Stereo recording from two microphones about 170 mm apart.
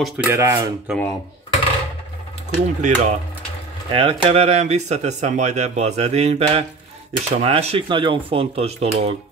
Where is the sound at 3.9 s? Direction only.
30° right (ahead or behind).